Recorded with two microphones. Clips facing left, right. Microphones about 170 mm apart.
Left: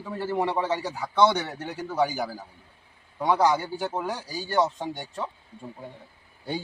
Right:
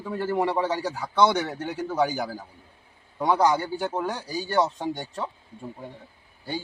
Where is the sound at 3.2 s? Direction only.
Centre (ahead or behind).